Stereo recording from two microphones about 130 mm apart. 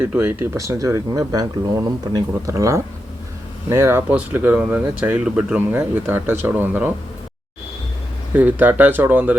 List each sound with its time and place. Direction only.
0.0 s speech: 15° right (ahead or behind)
8.3 s speech: 15° right (ahead or behind)